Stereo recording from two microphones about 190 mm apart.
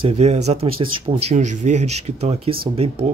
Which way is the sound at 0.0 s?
35° right (ahead or behind).